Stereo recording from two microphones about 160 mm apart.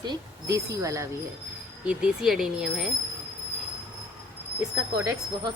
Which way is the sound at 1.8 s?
5° right (ahead or behind).